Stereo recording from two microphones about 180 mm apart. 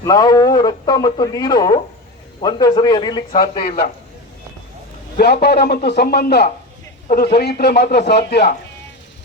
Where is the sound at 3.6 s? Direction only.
55° left (ahead or behind).